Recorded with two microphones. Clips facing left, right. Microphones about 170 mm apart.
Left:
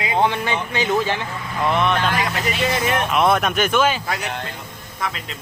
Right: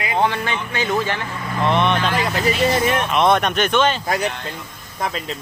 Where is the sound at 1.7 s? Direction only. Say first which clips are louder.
Right 1 dB; centre (ahead or behind).